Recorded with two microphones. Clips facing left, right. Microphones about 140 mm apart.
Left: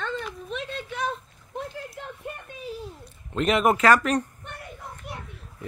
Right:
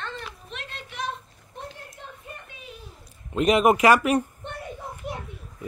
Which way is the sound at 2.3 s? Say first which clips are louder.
Left 4 dB; 60° left (ahead or behind).